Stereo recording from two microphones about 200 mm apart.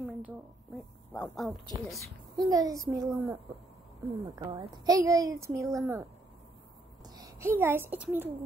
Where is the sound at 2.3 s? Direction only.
20° right (ahead or behind).